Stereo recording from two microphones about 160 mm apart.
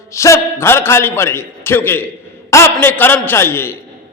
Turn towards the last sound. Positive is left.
turn(degrees=15)  # may be behind; listen again after turning